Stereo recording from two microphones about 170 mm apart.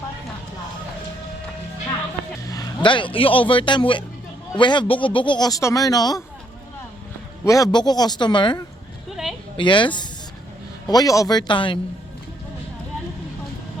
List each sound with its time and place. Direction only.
2.5 s a man's voice: 25° left (ahead or behind)
7.4 s speech: 20° left (ahead or behind)
9.0 s a sound: centre (ahead or behind)
9.6 s speech: 30° left (ahead or behind)